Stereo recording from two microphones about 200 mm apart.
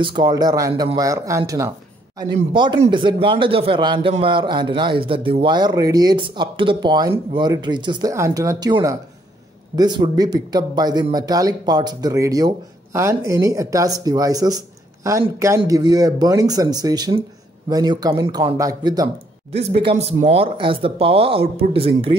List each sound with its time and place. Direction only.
0.0 s a man's voice: 25° right (ahead or behind)
19.8 s a man's voice: 30° right (ahead or behind)